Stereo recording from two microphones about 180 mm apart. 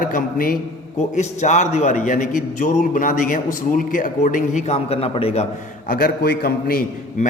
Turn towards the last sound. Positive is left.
turn(degrees=55)  # may be behind; listen again after turning